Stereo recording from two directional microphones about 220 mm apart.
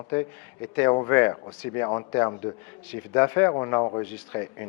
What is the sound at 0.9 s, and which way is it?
A man's voice, 15° left (ahead or behind).